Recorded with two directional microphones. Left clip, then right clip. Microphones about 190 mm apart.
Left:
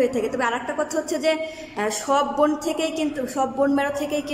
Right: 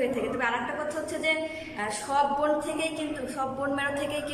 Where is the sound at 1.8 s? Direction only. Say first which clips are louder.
Left 5 dB; 35° left (ahead or behind).